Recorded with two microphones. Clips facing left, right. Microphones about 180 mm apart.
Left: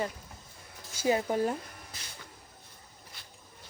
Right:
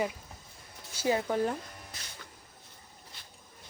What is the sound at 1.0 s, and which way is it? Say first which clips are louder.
Speech: left 1 dB; 15° left (ahead or behind).